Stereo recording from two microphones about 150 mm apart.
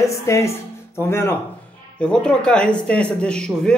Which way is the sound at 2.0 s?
5° left (ahead or behind).